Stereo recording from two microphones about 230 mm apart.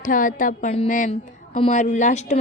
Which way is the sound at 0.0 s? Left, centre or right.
Left.